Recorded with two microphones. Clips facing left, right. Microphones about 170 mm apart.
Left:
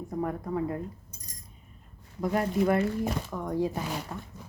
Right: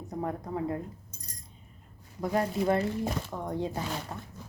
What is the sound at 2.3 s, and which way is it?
Speech, 30° right (ahead or behind).